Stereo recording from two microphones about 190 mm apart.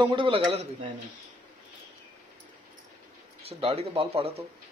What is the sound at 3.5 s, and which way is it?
Speech, 30° right (ahead or behind).